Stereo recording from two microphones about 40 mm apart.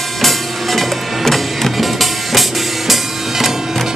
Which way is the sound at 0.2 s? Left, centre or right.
Centre.